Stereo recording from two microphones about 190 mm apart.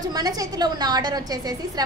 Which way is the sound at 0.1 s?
20° right (ahead or behind).